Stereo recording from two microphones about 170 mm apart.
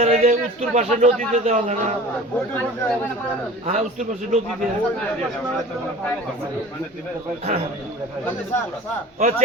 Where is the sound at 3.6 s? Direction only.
45° right (ahead or behind).